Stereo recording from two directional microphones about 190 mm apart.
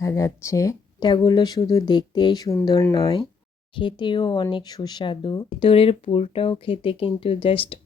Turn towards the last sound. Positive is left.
turn(degrees=30)  # may be behind; listen again after turning